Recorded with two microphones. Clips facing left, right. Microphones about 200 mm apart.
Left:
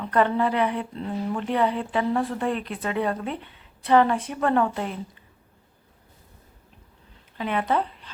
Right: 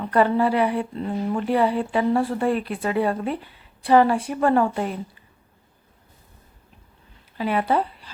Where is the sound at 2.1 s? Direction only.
30° right (ahead or behind).